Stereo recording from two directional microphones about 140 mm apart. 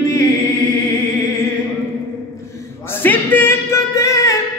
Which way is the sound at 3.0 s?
15° left (ahead or behind).